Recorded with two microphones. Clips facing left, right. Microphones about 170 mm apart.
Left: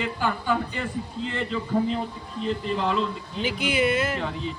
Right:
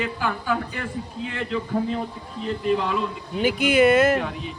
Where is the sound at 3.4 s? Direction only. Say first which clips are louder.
Right 6 dB; 50° right (ahead or behind).